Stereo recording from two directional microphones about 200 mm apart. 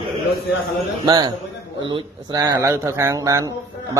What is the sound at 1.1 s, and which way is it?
Speech, 20° right (ahead or behind).